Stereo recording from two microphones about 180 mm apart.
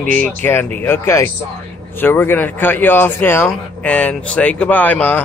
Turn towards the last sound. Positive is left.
turn(degrees=10)  # may be behind; listen again after turning